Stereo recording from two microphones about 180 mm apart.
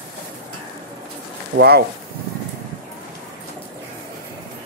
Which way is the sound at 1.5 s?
60° right (ahead or behind).